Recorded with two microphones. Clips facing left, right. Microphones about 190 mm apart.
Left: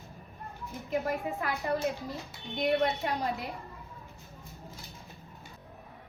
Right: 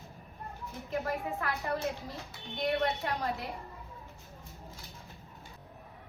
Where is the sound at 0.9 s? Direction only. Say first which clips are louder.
Left 3 dB; 15° left (ahead or behind).